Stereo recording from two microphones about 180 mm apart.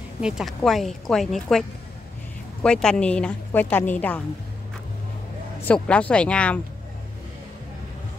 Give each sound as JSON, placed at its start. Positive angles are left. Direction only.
{"t": 0.2, "sound": "speech", "side_deg": 0}
{"t": 2.6, "sound": "a woman's voice", "side_deg": 5}
{"t": 5.7, "sound": "a woman's voice", "side_deg": 5}